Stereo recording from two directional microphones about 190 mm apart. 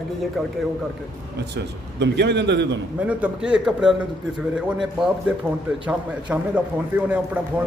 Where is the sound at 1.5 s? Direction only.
65° right (ahead or behind).